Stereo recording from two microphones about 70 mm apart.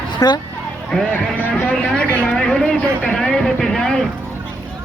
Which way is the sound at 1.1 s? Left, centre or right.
Left.